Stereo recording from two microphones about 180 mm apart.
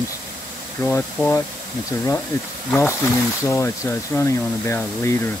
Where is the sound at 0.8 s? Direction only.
10° left (ahead or behind).